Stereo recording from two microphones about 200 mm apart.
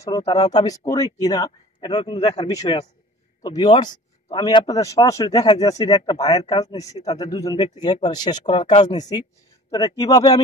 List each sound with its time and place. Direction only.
0.0 s a man's voice: 20° left (ahead or behind)